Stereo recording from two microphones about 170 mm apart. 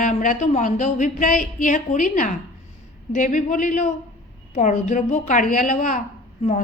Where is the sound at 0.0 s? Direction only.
50° left (ahead or behind).